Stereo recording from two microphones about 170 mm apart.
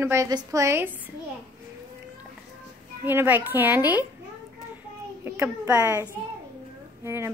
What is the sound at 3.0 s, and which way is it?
Speech, 10° right (ahead or behind).